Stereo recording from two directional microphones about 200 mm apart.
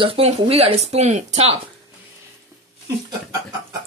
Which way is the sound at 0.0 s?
30° right (ahead or behind).